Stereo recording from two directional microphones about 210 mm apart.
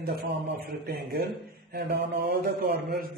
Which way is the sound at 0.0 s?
50° right (ahead or behind).